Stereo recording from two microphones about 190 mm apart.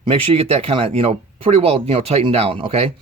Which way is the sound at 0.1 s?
30° right (ahead or behind).